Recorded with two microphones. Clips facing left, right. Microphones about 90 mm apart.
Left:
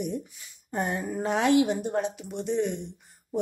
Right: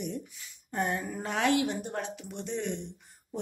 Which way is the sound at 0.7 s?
20° left (ahead or behind).